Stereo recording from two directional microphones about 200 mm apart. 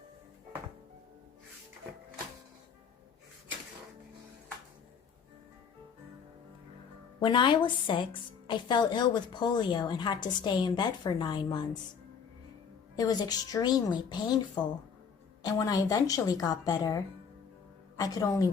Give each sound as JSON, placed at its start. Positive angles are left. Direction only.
{"t": 7.2, "sound": "a woman's voice", "side_deg": 25}
{"t": 13.0, "sound": "a woman's voice", "side_deg": 20}